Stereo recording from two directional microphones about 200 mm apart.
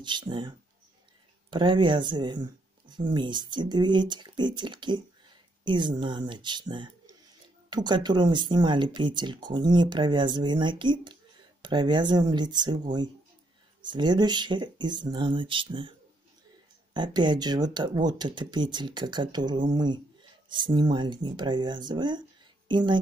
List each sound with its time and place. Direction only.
0.0 s speech: 25° right (ahead or behind)
16.9 s speech: 20° right (ahead or behind)